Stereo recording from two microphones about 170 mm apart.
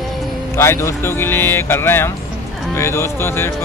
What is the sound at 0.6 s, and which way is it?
Speech, 15° left (ahead or behind).